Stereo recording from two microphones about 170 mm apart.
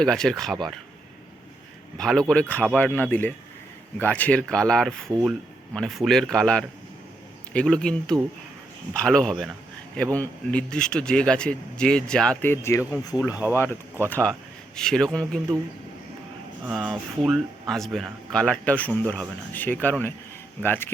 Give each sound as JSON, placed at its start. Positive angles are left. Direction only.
{"t": 0.0, "sound": "speech", "side_deg": 5}
{"t": 2.0, "sound": "speech", "side_deg": 5}
{"t": 16.6, "sound": "speech", "side_deg": 0}